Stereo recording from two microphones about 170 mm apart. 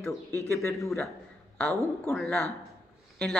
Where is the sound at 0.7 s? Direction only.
Centre (ahead or behind).